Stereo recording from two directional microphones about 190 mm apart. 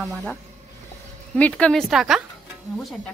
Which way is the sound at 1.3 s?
5° left (ahead or behind).